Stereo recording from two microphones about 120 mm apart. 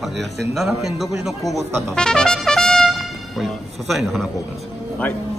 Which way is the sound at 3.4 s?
Centre (ahead or behind).